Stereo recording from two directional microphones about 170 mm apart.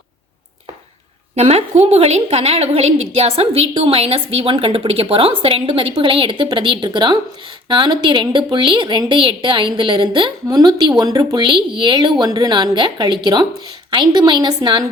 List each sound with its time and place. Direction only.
1.4 s a woman's voice: 40° right (ahead or behind)